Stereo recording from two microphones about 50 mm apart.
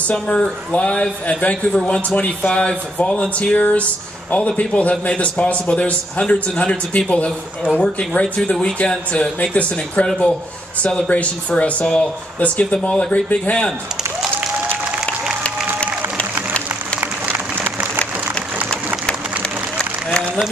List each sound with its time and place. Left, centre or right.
0.0 s a man's voice: left
10.0 s speech: centre
11.1 s a man's voice: left
17.0 s applause: right
19.8 s a sound: centre